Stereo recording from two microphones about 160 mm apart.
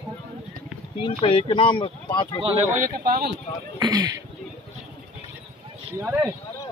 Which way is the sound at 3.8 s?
25° right (ahead or behind).